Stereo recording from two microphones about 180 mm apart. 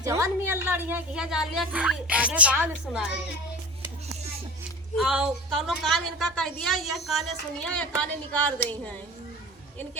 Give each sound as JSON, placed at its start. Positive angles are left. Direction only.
{"t": 0.0, "sound": "a woman's voice", "side_deg": -15}
{"t": 4.9, "sound": "a woman's voice", "side_deg": -5}